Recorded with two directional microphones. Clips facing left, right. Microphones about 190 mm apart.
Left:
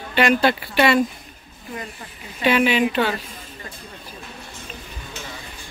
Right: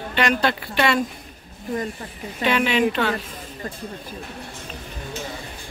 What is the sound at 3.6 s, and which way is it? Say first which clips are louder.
Speech: right 9 dB; 45° right (ahead or behind).